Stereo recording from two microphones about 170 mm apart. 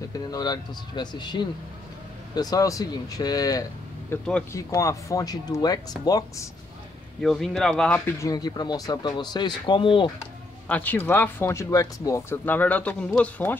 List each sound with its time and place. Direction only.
0.3 s speech: 25° left (ahead or behind)
4.1 s speech: 10° left (ahead or behind)
7.2 s speech: centre (ahead or behind)
8.2 s speech: 20° left (ahead or behind)
10.7 s speech: 10° left (ahead or behind)